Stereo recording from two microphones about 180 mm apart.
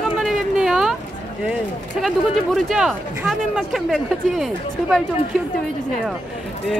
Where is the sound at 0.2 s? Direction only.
Centre (ahead or behind).